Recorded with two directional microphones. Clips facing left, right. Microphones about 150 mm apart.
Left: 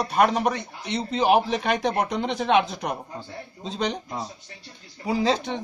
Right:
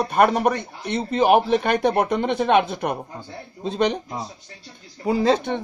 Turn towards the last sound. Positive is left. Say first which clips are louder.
# right 4 dB
turn(degrees=-55)  # may be behind; listen again after turning